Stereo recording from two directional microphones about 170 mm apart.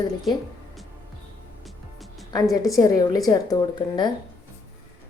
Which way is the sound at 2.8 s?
20° left (ahead or behind).